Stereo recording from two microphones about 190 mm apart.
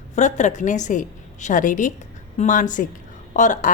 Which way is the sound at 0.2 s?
40° left (ahead or behind).